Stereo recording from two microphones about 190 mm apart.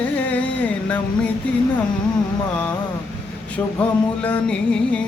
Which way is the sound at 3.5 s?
5° left (ahead or behind).